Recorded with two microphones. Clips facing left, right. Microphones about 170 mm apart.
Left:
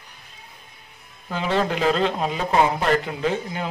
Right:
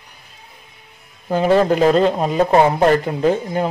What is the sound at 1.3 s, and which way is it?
Speech, 45° right (ahead or behind).